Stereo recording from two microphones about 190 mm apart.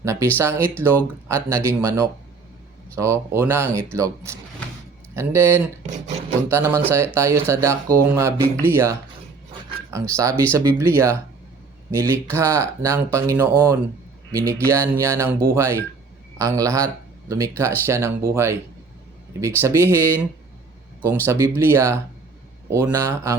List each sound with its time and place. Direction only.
0.0 s speech: 15° right (ahead or behind)
14.7 s speech: 15° right (ahead or behind)